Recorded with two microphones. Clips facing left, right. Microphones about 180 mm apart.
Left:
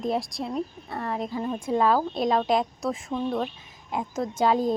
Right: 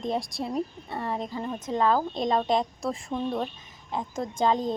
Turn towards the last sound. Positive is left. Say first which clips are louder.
# left 2 dB
turn(degrees=10)  # may be behind; listen again after turning